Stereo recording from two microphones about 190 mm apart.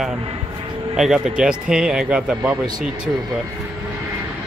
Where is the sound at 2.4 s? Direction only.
20° right (ahead or behind).